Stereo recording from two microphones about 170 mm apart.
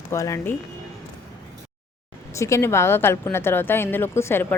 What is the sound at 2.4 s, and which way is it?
Speech, 20° left (ahead or behind).